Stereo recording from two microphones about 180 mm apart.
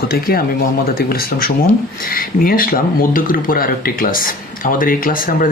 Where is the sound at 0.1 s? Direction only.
55° left (ahead or behind).